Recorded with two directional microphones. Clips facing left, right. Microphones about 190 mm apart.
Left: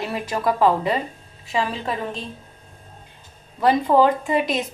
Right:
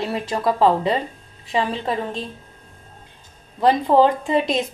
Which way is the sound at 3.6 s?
25° right (ahead or behind).